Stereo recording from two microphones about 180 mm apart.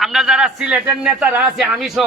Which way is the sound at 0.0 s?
Centre (ahead or behind).